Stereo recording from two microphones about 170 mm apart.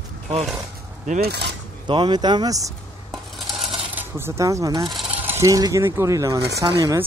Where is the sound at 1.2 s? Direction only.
75° right (ahead or behind).